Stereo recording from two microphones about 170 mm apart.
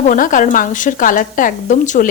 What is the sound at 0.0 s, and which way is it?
A woman's voice, 50° left (ahead or behind).